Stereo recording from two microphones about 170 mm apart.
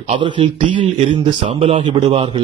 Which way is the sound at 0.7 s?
30° right (ahead or behind).